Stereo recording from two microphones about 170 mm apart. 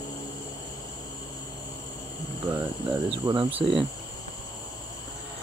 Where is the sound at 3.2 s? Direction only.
25° right (ahead or behind).